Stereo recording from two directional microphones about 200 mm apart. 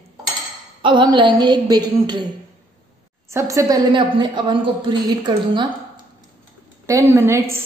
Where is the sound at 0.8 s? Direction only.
25° right (ahead or behind).